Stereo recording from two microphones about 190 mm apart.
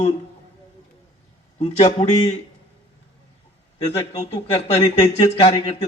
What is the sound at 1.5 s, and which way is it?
Speech, 30° left (ahead or behind).